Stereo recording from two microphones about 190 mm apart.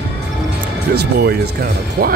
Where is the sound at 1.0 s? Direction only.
55° right (ahead or behind).